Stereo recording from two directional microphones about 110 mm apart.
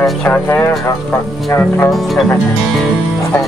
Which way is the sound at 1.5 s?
20° left (ahead or behind).